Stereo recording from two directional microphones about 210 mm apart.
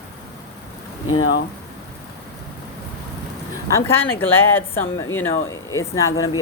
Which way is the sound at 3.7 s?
10° left (ahead or behind).